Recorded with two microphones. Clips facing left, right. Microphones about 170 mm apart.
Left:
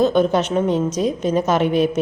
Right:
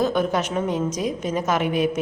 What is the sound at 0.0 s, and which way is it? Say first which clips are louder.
A woman's voice: left 5 dB; 25° left (ahead or behind).